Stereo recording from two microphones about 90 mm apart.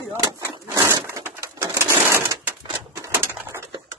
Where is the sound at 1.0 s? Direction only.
25° right (ahead or behind).